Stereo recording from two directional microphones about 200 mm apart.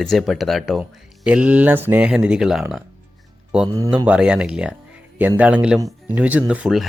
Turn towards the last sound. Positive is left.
turn(degrees=0)  # may be behind; listen again after turning